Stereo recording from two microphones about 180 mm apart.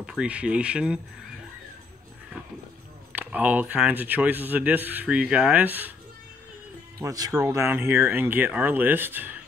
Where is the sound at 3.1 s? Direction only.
10° right (ahead or behind).